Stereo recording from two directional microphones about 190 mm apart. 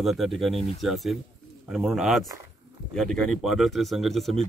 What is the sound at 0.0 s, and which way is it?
Speech, centre (ahead or behind).